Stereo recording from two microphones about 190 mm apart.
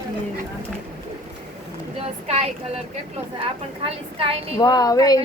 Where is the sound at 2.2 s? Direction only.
35° right (ahead or behind).